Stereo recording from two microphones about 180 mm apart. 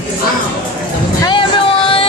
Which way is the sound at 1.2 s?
25° left (ahead or behind).